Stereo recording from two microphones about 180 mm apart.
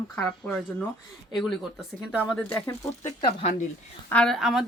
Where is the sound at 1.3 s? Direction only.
Centre (ahead or behind).